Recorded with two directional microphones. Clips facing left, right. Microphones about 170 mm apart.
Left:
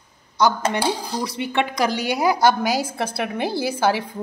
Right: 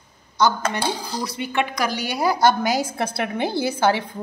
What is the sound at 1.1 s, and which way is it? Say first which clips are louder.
A woman's voice: left 1 dB; 25° left (ahead or behind).